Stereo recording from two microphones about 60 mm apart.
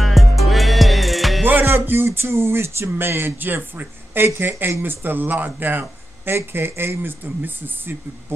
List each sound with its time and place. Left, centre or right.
0.0 s music: centre
1.4 s music: right
1.7 s speech: right